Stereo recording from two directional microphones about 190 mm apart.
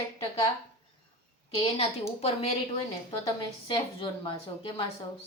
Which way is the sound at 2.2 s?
35° left (ahead or behind).